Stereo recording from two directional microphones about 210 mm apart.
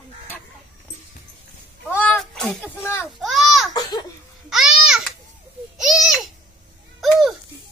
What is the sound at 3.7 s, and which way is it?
Laughter, 20° left (ahead or behind).